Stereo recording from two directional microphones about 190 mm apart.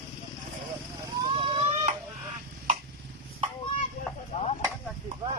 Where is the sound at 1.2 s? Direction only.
30° right (ahead or behind).